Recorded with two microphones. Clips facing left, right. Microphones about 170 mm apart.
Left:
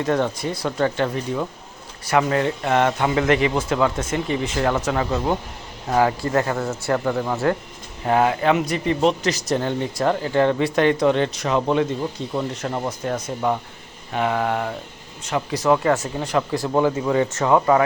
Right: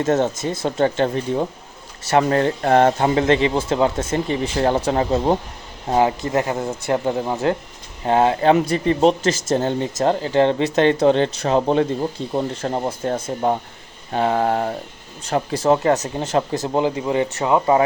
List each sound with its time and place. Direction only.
0.1 s speech: 20° right (ahead or behind)
5.9 s speech: 20° right (ahead or behind)